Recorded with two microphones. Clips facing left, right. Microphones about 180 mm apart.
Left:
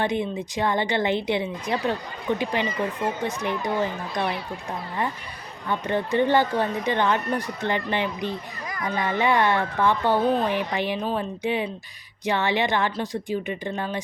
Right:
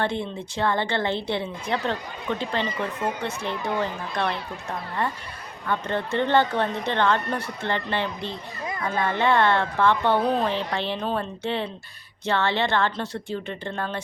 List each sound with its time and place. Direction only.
0.0 s speech: 15° left (ahead or behind)
5.6 s speech: 15° left (ahead or behind)
10.5 s speech: 15° left (ahead or behind)